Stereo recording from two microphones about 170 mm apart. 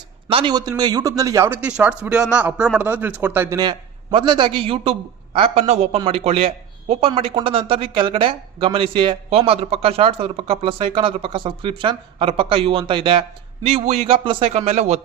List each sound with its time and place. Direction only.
0.3 s a man's voice: 30° right (ahead or behind); by 3.6 s 10° right (ahead or behind)
3.6 s speech: 30° right (ahead or behind)